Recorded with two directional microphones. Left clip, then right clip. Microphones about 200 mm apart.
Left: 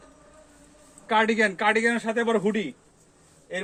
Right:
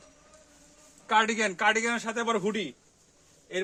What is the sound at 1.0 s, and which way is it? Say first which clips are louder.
A man's voice: left 3 dB; 30° right (ahead or behind).